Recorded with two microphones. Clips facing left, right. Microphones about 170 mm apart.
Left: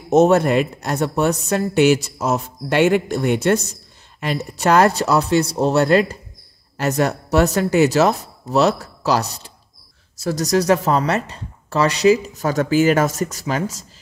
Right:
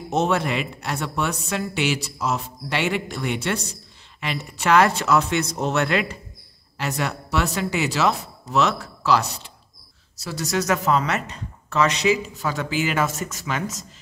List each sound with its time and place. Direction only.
0.1 s speech: 45° left (ahead or behind)